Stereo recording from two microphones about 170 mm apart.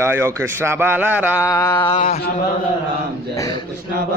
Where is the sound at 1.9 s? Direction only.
40° left (ahead or behind).